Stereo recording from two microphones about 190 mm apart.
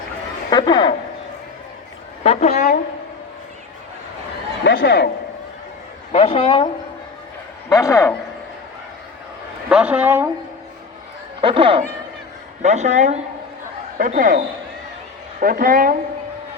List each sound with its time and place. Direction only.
0.5 s speech: 25° left (ahead or behind)
2.2 s a sound: 35° left (ahead or behind)
4.6 s speech: 70° left (ahead or behind)
6.1 s a woman's voice: 30° left (ahead or behind)
7.7 s speech: 15° left (ahead or behind)
9.6 s a woman's voice: 5° right (ahead or behind)
11.3 s speech: 30° right (ahead or behind)
12.6 s a woman's voice: 40° right (ahead or behind)